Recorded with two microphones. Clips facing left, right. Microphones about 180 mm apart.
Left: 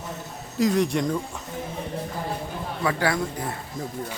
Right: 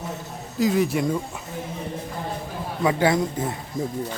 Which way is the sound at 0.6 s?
5° right (ahead or behind).